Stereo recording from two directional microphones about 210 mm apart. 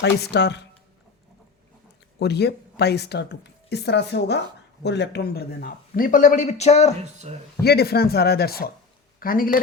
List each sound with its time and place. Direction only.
0.0 s speech: 55° left (ahead or behind)
2.1 s a man's voice: 50° left (ahead or behind); by 6.9 s 30° left (ahead or behind)
7.0 s speech: 35° right (ahead or behind)
7.6 s speech: 50° left (ahead or behind)